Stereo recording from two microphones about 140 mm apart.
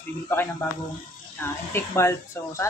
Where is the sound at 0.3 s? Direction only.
15° left (ahead or behind).